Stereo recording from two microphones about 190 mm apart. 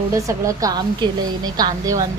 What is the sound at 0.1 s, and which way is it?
A woman's voice, 15° right (ahead or behind).